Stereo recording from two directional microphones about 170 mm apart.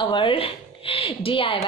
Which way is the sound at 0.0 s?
30° left (ahead or behind).